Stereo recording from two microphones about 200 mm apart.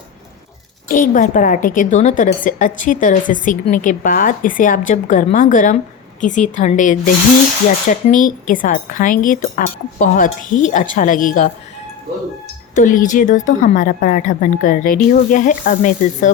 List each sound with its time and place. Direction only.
0.9 s a woman's voice: 40° left (ahead or behind)
12.7 s a woman's voice: 40° left (ahead or behind)